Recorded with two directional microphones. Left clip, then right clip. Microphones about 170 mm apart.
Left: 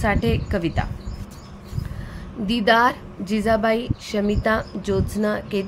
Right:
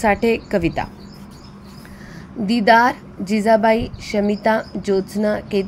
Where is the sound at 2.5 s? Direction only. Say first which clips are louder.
Right 4 dB; 15° right (ahead or behind).